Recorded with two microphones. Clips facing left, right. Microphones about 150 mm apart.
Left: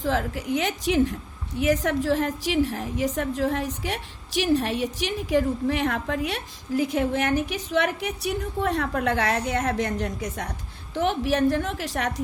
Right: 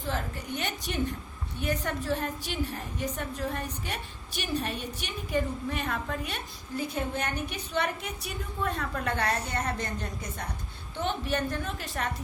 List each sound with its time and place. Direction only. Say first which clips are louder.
0.0 s a woman's voice: left 8 dB; 90° left